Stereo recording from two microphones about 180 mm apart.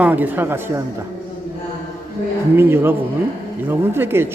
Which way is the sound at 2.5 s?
10° right (ahead or behind).